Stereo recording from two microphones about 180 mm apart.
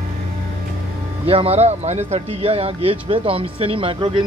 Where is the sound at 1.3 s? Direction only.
35° right (ahead or behind).